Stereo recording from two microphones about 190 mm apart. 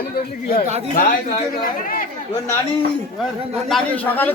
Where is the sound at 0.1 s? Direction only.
50° left (ahead or behind).